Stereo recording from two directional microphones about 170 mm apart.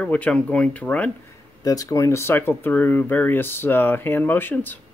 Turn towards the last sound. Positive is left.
turn(degrees=10)  # may be behind; listen again after turning